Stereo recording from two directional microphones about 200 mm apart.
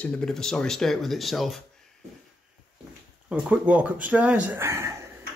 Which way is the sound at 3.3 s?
5° right (ahead or behind).